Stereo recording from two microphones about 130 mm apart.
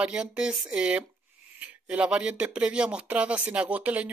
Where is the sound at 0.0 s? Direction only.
5° right (ahead or behind).